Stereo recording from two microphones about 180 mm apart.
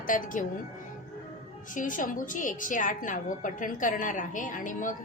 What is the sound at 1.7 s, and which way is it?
A woman's voice, 45° left (ahead or behind).